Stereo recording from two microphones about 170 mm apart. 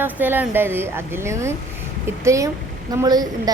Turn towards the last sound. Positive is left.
turn(degrees=-20)  # may be behind; listen again after turning